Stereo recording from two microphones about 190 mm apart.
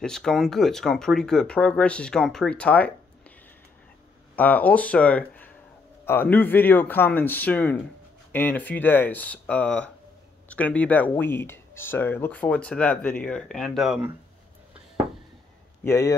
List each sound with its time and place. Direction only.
0.0 s speech: centre (ahead or behind)
4.4 s speech: 10° left (ahead or behind)
15.8 s speech: 15° left (ahead or behind)